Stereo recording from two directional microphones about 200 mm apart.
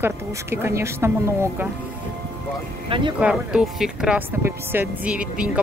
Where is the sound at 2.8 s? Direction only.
25° right (ahead or behind).